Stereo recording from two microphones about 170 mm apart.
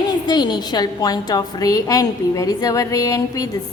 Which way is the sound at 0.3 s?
25° left (ahead or behind).